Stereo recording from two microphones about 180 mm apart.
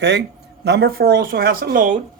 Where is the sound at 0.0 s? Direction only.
70° right (ahead or behind).